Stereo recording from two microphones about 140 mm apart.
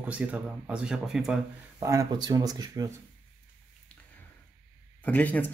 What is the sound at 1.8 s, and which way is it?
Speech, 25° right (ahead or behind).